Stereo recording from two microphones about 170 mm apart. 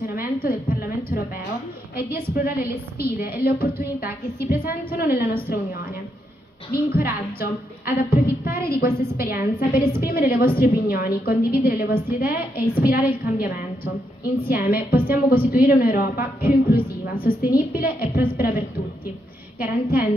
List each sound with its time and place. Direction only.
0.0 s a sound: 60° left (ahead or behind)
2.0 s a woman's voice: 60° left (ahead or behind)
19.6 s a woman's voice: 60° left (ahead or behind)